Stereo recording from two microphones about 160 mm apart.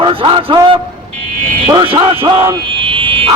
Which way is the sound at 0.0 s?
35° right (ahead or behind).